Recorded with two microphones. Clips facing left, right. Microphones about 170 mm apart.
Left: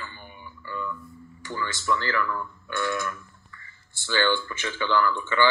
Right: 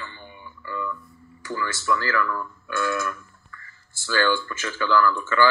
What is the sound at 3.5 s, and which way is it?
Speech, 20° left (ahead or behind).